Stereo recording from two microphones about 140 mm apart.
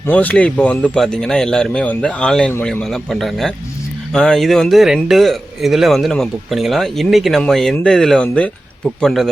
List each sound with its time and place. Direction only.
0.1 s speech: 10° left (ahead or behind)